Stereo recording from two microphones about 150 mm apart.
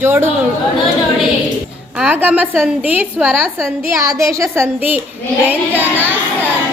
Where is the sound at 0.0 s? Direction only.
15° right (ahead or behind).